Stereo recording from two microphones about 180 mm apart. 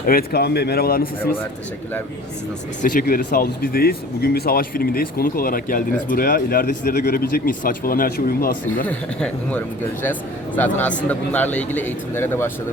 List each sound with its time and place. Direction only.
0.0 s speech: 55° left (ahead or behind)
2.8 s speech: 55° left (ahead or behind)
8.9 s speech: 10° left (ahead or behind)